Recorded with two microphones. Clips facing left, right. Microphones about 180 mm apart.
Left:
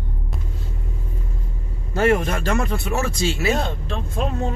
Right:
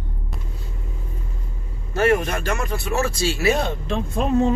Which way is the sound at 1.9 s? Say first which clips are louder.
Even; 20° left (ahead or behind).